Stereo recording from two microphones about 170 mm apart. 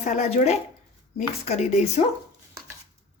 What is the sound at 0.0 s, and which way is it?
Speech, 45° left (ahead or behind).